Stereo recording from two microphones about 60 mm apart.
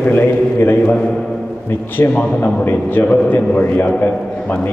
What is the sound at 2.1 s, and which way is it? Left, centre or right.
A man's voice, left.